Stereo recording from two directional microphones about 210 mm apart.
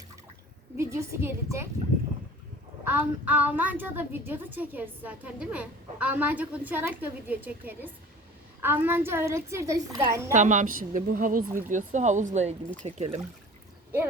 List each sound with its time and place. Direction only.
0.8 s a woman's voice: 15° right (ahead or behind)
2.8 s a woman's voice: 10° right (ahead or behind)
10.3 s speech: 35° right (ahead or behind)